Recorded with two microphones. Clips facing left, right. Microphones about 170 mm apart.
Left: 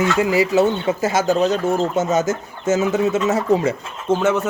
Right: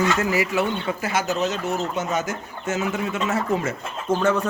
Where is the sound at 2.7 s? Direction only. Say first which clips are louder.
Left 7 dB; 25° left (ahead or behind).